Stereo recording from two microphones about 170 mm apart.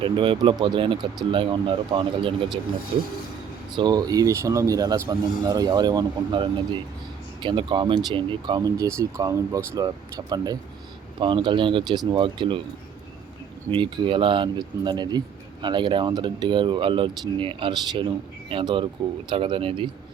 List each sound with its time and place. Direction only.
0.0 s speech: 30° right (ahead or behind)
13.7 s speech: 30° right (ahead or behind)